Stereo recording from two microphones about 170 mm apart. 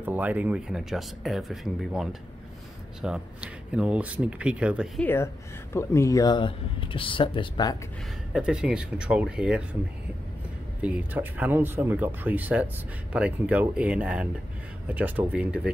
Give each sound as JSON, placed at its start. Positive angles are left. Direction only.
{"t": 0.0, "sound": "speech", "side_deg": -10}
{"t": 5.0, "sound": "speech", "side_deg": 15}
{"t": 8.3, "sound": "speech", "side_deg": -5}
{"t": 10.8, "sound": "speech", "side_deg": -10}